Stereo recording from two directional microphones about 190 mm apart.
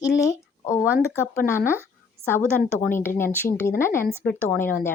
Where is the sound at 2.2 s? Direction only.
30° right (ahead or behind).